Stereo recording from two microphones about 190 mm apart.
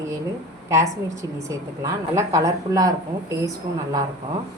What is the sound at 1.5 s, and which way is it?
Speech, 15° right (ahead or behind).